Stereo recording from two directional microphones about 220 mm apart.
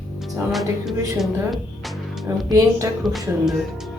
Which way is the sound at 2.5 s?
15° right (ahead or behind).